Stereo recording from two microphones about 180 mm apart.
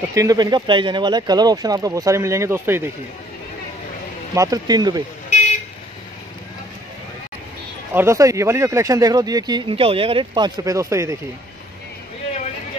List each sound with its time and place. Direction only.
0.1 s speech: 20° right (ahead or behind)
4.4 s speech: 20° right (ahead or behind)
7.9 s speech: 15° right (ahead or behind)